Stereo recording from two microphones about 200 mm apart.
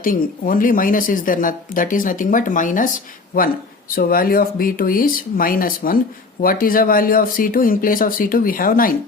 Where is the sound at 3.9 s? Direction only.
45° left (ahead or behind).